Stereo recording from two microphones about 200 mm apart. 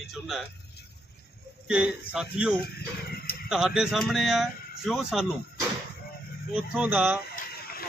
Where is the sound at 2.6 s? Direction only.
50° left (ahead or behind).